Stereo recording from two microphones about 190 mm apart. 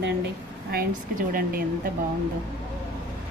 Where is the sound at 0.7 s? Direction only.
50° right (ahead or behind).